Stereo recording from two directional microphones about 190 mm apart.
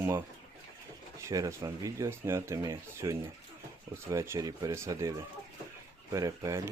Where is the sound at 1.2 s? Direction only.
15° right (ahead or behind).